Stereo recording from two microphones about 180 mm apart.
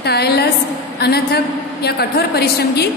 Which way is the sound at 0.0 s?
65° left (ahead or behind).